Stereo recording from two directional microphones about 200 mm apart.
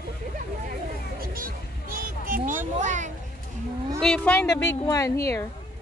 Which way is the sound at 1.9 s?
45° right (ahead or behind).